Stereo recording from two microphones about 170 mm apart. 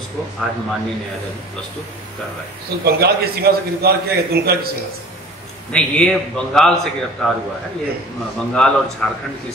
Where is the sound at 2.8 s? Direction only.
70° right (ahead or behind).